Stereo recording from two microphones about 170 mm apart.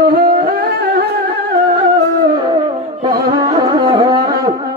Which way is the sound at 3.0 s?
25° right (ahead or behind).